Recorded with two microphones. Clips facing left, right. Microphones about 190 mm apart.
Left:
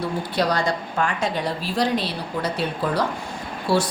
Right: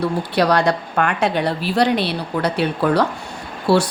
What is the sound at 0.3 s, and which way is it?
A woman's voice, 65° right (ahead or behind).